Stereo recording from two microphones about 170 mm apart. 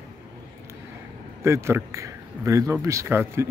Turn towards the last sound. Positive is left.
turn(degrees=-15)  # may be behind; listen again after turning